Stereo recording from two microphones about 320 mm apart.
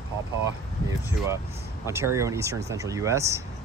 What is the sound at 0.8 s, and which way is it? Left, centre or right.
Speech, centre.